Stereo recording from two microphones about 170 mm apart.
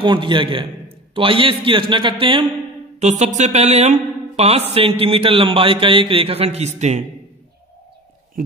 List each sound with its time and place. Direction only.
0.0 s a man's voice: 30° right (ahead or behind)
3.0 s a man's voice: 40° right (ahead or behind)